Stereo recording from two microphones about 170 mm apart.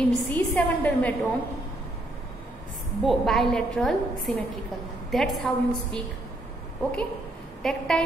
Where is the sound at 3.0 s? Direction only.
Centre (ahead or behind).